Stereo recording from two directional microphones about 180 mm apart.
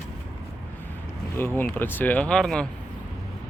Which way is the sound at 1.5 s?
10° left (ahead or behind).